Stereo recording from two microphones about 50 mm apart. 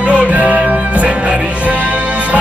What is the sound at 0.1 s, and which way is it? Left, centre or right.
Music, right.